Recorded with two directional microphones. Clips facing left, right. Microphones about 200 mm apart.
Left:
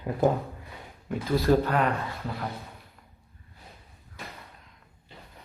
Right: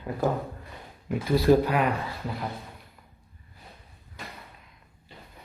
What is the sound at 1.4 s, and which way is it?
Speech, 15° right (ahead or behind).